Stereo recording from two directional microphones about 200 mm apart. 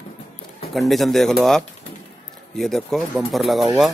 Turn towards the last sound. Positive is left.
turn(degrees=0)  # may be behind; listen again after turning